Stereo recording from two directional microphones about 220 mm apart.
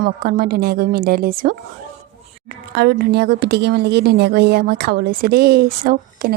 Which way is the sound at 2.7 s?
50° right (ahead or behind).